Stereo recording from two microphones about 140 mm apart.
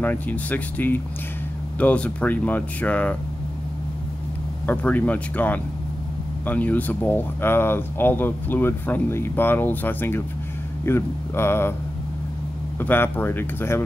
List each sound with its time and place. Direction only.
0.0 s speech: 10° left (ahead or behind)
4.6 s speech: 10° left (ahead or behind)
12.7 s speech: 15° left (ahead or behind)